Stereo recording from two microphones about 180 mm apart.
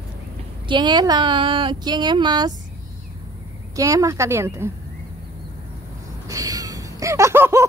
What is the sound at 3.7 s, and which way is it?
A woman's voice, 20° right (ahead or behind).